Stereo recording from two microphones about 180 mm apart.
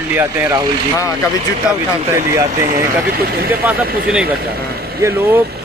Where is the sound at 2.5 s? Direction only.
50° right (ahead or behind).